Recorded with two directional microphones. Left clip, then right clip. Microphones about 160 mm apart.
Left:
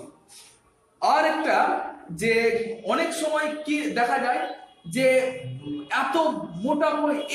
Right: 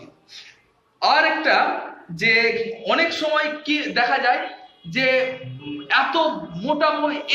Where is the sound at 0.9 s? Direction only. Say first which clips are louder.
Right 3 dB; 10° left (ahead or behind).